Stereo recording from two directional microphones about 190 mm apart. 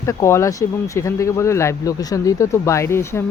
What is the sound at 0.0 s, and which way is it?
Speech, 15° left (ahead or behind).